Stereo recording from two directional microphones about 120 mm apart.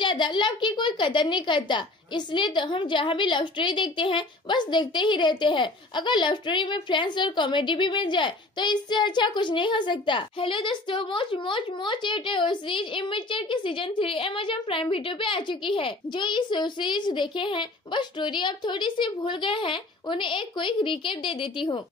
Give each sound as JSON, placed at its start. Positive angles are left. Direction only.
{"t": 0.0, "sound": "a woman's voice", "side_deg": 40}